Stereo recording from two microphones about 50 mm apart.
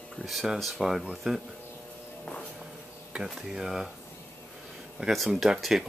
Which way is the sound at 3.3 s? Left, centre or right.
Centre.